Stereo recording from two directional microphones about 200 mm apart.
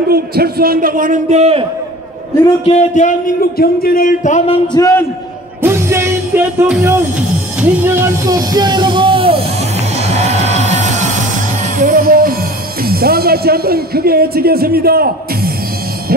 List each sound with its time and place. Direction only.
0.1 s a man's voice: 50° right (ahead or behind); by 1.7 s 30° right (ahead or behind)
2.7 s speech: 35° left (ahead or behind)
4.7 s a man's voice: 15° left (ahead or behind)
5.6 s music: 10° right (ahead or behind); by 12.4 s 45° right (ahead or behind)
12.8 s speech: 50° right (ahead or behind)